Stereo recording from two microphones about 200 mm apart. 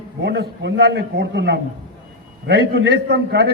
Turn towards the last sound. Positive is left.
turn(degrees=-60)  # may be behind; listen again after turning